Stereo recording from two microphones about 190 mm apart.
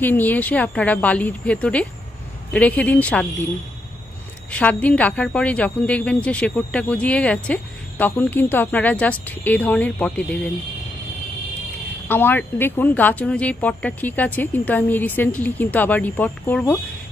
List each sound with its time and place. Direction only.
0.0 s speech: 10° left (ahead or behind)
4.5 s speech: 5° left (ahead or behind)
12.1 s speech: 10° left (ahead or behind)